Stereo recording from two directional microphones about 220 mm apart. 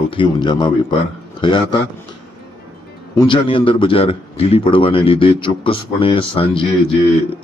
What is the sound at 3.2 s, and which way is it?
A man's voice, 20° left (ahead or behind).